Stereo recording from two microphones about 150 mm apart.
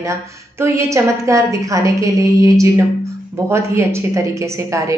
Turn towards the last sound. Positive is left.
turn(degrees=-20)  # may be behind; listen again after turning